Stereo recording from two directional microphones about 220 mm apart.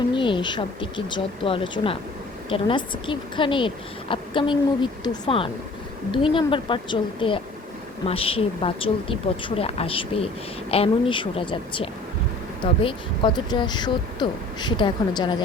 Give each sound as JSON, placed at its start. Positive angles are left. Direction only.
{"t": 0.1, "sound": "speech", "side_deg": 20}